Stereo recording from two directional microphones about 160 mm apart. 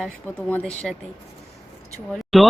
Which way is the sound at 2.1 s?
Centre (ahead or behind).